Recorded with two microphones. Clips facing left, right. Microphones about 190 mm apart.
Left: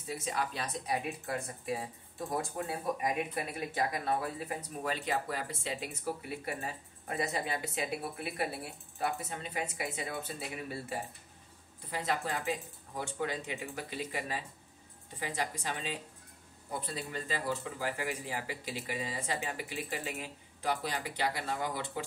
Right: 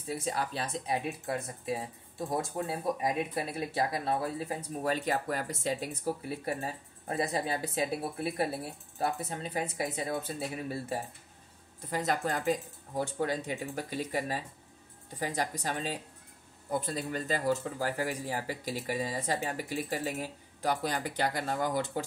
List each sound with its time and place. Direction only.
0.1 s speech: 35° right (ahead or behind)
4.9 s speech: 45° right (ahead or behind)